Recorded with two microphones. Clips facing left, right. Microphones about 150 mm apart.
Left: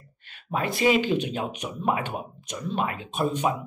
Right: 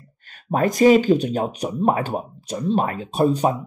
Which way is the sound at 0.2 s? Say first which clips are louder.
Right 8 dB; 40° right (ahead or behind).